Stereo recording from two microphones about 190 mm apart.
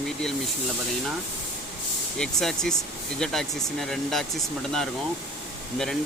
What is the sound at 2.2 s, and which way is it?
Speech, 5° left (ahead or behind).